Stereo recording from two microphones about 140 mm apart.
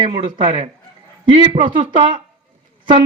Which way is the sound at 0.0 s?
35° right (ahead or behind).